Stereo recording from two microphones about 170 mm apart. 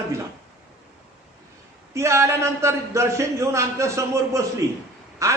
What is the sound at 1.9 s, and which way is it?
A man's voice, 15° right (ahead or behind).